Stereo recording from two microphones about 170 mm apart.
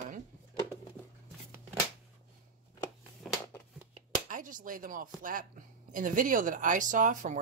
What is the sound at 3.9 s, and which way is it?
Chopping, 50° right (ahead or behind).